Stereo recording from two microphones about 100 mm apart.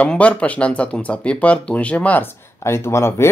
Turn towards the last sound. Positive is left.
turn(degrees=25)  # may be behind; listen again after turning